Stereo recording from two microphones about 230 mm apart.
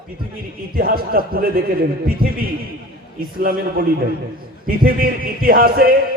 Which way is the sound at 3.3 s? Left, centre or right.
Right.